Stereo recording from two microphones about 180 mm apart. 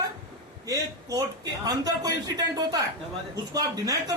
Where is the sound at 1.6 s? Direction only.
20° right (ahead or behind).